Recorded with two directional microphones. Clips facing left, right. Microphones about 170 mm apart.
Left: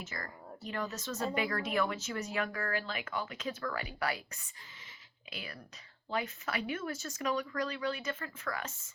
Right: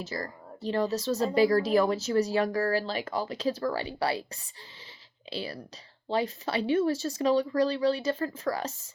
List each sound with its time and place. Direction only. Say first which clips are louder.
0.0 s speech: right 8 dB; 35° right (ahead or behind)
5.3 s speech: right 10 dB; 30° right (ahead or behind)